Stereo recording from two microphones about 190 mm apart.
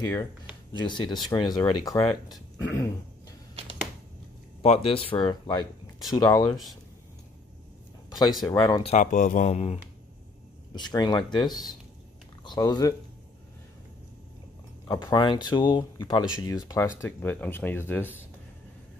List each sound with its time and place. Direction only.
0.0 s speech: 15° left (ahead or behind)
4.6 s speech: 30° left (ahead or behind)
6.5 s speech: centre (ahead or behind)
8.5 s speech: 25° left (ahead or behind)
8.9 s speech: 45° left (ahead or behind)
10.7 s speech: 20° left (ahead or behind)
14.9 s speech: 25° left (ahead or behind)